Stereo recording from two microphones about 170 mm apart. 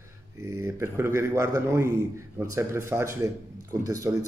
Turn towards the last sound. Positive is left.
turn(degrees=-20)  # may be behind; listen again after turning